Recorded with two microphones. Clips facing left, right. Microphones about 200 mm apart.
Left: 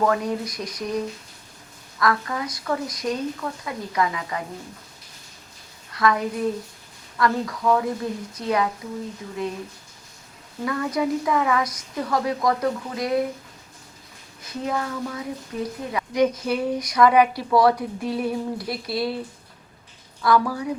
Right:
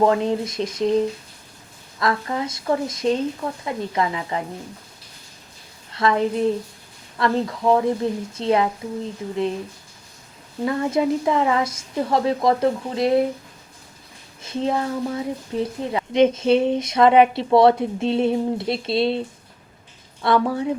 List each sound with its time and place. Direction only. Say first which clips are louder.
0.0 s a woman's voice: right 4 dB; 25° right (ahead or behind)
5.9 s a woman's voice: right 2 dB; 25° right (ahead or behind)
10.7 s a woman's voice: right 3 dB; 25° right (ahead or behind)
14.4 s a woman's voice: right 4 dB; 25° right (ahead or behind)
20.2 s a woman's voice: right 2 dB; 25° right (ahead or behind)